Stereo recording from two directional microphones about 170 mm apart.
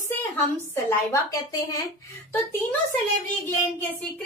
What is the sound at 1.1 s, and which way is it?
A woman's voice, 20° left (ahead or behind).